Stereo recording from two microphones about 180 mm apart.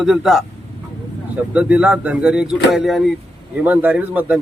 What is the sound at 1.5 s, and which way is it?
A man's voice, 5° right (ahead or behind).